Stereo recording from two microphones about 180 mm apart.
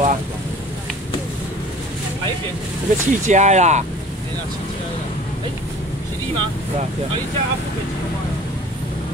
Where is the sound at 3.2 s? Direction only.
40° right (ahead or behind).